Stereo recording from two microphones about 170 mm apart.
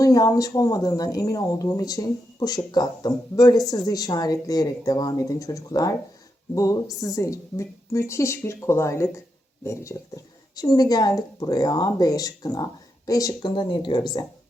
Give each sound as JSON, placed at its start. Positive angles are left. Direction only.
{"t": 0.0, "sound": "speech", "side_deg": 20}